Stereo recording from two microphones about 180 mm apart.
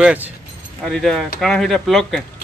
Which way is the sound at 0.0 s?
10° right (ahead or behind).